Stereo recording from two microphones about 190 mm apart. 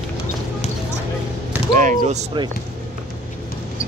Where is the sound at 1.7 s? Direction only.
45° right (ahead or behind).